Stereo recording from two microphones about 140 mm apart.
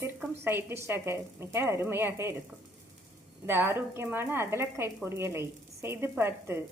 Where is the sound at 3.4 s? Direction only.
15° right (ahead or behind).